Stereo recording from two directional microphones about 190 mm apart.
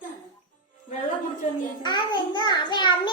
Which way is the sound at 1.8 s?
25° left (ahead or behind).